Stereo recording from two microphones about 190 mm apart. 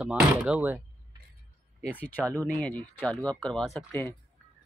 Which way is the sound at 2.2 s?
15° right (ahead or behind).